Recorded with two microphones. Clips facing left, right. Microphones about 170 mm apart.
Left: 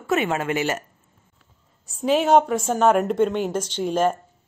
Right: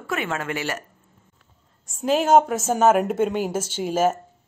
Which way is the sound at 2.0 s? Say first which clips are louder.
Even; centre (ahead or behind).